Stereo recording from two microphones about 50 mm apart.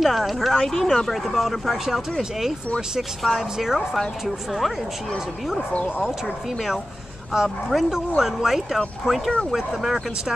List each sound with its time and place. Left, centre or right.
0.0 s speech: centre
5.7 s speech: left
7.3 s speech: centre